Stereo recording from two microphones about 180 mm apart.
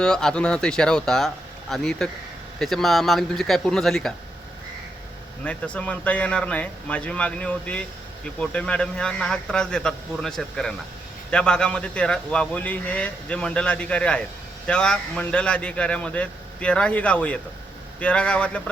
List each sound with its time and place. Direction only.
0.0 s a man's voice: 5° left (ahead or behind)
5.5 s a man's voice: 5° left (ahead or behind)